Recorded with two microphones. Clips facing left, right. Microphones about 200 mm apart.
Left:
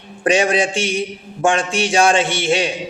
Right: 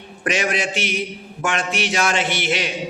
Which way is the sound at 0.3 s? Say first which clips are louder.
Left 6 dB; 30° left (ahead or behind).